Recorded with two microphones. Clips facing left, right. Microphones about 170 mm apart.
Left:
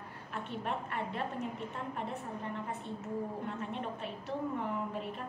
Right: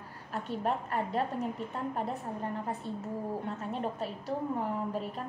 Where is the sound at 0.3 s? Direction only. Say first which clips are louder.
Right 5 dB; 40° right (ahead or behind).